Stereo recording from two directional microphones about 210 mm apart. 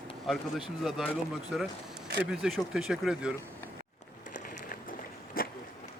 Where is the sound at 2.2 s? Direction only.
5° right (ahead or behind).